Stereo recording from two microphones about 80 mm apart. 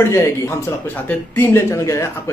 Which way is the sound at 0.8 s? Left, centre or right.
Left.